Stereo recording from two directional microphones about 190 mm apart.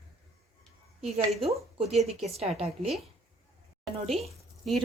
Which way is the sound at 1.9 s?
Centre (ahead or behind).